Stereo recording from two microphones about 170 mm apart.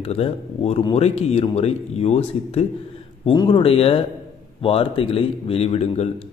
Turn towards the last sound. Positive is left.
turn(degrees=40)  # may be behind; listen again after turning